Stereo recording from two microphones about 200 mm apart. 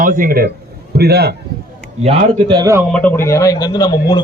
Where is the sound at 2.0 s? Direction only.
30° right (ahead or behind).